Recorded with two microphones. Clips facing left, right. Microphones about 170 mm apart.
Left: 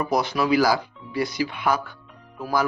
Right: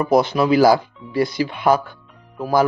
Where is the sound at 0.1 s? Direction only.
25° right (ahead or behind).